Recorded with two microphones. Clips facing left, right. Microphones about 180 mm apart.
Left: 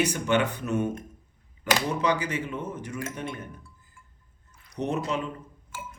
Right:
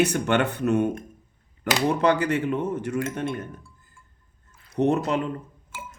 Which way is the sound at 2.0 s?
60° right (ahead or behind).